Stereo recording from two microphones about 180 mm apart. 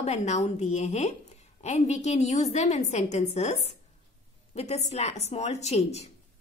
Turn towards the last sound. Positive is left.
turn(degrees=35)  # may be behind; listen again after turning